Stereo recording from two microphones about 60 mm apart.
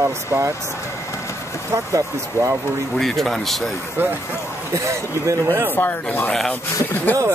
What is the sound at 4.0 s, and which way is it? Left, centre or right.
Speech, right.